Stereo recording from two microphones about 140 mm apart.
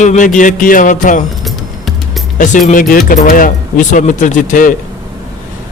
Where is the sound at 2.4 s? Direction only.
65° left (ahead or behind).